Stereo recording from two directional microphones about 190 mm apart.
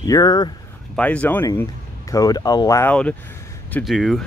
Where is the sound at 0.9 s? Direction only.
5° left (ahead or behind).